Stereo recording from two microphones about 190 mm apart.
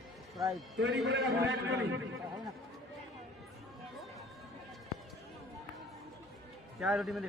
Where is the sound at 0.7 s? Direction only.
70° right (ahead or behind).